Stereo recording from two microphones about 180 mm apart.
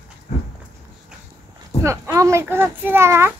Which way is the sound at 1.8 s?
15° right (ahead or behind).